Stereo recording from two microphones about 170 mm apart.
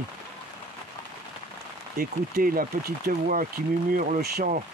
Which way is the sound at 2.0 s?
60° right (ahead or behind).